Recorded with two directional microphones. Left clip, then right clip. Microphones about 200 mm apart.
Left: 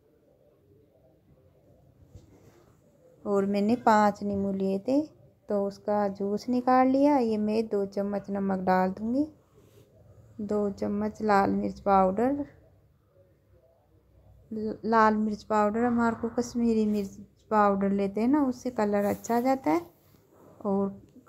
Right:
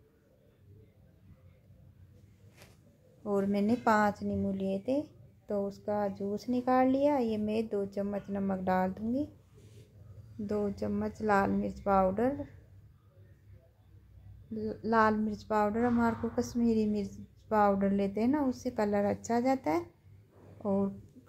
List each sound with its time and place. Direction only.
3.3 s a woman's voice: 20° left (ahead or behind)
10.4 s a woman's voice: 20° left (ahead or behind)
14.5 s a woman's voice: 20° left (ahead or behind)